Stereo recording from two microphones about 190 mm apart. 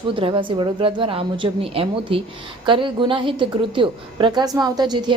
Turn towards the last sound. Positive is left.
turn(degrees=-25)  # may be behind; listen again after turning